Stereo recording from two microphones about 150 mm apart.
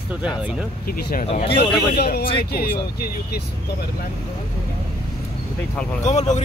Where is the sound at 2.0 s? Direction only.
90° left.